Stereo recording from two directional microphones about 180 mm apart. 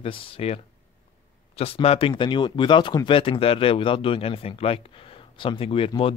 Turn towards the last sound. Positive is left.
turn(degrees=30)  # may be behind; listen again after turning